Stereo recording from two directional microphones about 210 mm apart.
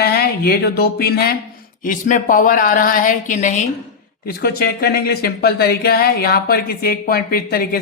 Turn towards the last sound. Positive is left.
turn(degrees=45)  # may be behind; listen again after turning